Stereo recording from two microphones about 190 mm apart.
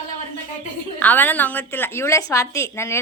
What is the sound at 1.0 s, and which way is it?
A woman's voice, 10° left (ahead or behind).